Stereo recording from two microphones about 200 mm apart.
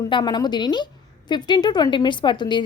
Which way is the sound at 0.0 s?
20° left (ahead or behind).